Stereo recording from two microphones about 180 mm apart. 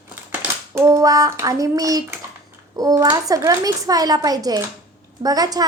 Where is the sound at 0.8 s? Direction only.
15° right (ahead or behind).